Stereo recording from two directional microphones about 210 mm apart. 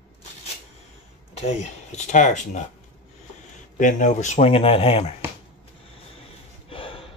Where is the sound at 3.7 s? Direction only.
35° left (ahead or behind).